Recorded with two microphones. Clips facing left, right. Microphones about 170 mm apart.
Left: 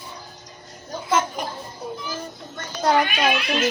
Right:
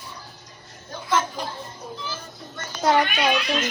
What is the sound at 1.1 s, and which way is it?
Speech, 20° left (ahead or behind).